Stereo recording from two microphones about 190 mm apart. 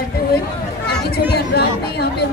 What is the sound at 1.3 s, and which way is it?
Speech, 60° left (ahead or behind).